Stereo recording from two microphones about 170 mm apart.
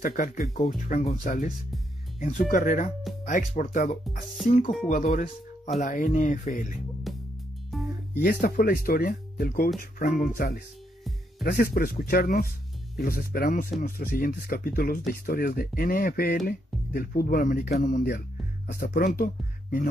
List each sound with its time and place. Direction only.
0.0 s speech: 55° left (ahead or behind)
7.1 s music: centre (ahead or behind)
8.2 s speech: 65° left (ahead or behind)